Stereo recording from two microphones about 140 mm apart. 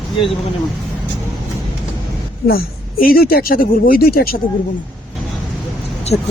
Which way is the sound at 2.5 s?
90° left.